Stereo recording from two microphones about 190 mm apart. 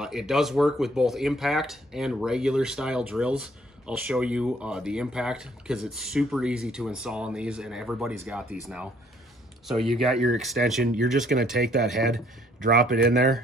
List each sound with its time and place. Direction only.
0.0 s speech: centre (ahead or behind)
12.5 s speech: 45° right (ahead or behind)